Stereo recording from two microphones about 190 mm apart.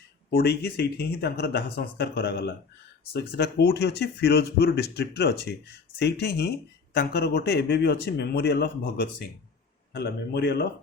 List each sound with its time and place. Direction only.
0.3 s speech: 55° left (ahead or behind)